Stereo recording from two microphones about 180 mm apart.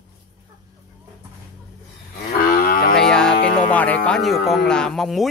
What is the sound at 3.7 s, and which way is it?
Speech, 10° left (ahead or behind).